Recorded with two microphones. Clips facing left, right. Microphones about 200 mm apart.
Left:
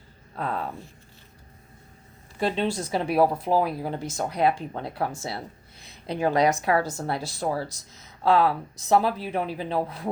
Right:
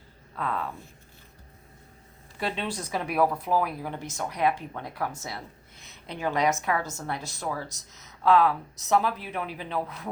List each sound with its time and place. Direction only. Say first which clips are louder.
0.3 s speech: left 2 dB; 35° left (ahead or behind)
2.4 s speech: left 6 dB; 25° left (ahead or behind)